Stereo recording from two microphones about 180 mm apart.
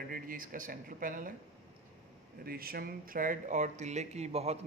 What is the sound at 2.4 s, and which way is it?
Speech, 55° right (ahead or behind).